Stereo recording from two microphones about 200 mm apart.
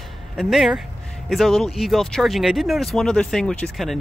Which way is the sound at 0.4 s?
Centre (ahead or behind).